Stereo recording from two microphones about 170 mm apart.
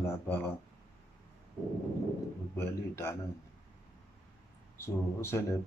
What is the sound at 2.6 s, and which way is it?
Speech, 15° left (ahead or behind).